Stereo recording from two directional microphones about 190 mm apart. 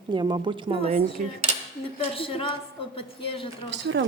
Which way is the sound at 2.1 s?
30° left (ahead or behind).